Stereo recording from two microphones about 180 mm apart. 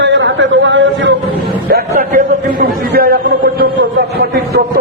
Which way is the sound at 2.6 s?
55° right (ahead or behind).